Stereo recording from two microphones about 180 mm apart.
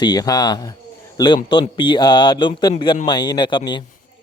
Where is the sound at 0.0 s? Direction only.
20° left (ahead or behind).